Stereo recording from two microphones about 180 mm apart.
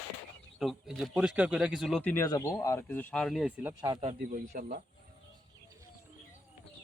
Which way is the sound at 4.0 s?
40° right (ahead or behind).